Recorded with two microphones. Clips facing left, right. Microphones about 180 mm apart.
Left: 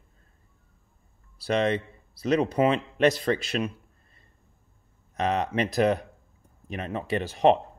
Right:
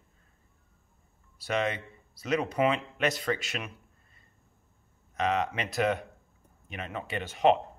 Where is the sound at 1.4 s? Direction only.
35° left (ahead or behind).